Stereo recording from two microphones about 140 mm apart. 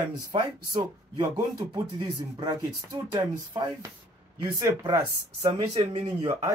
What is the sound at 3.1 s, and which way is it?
Speech, 30° right (ahead or behind).